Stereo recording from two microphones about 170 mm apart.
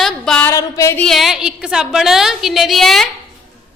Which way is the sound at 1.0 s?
Centre (ahead or behind).